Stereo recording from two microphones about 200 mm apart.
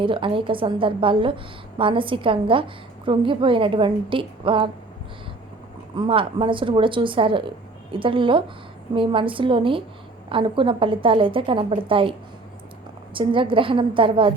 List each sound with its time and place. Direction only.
0.0 s a woman's voice: 25° right (ahead or behind)
6.0 s a woman's voice: 25° right (ahead or behind)
13.1 s a woman's voice: 25° right (ahead or behind)